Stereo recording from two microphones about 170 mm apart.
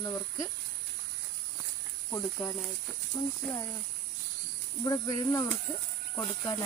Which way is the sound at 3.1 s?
20° left (ahead or behind).